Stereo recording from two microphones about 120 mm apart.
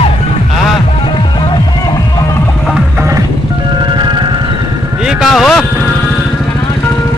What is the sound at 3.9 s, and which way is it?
Music, 40° right (ahead or behind).